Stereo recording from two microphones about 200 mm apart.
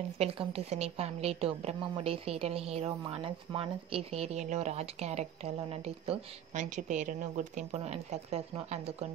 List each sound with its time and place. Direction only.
0.2 s a woman's voice: 30° right (ahead or behind)